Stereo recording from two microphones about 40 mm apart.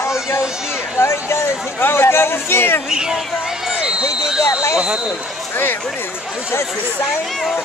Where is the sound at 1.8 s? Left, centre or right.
Left.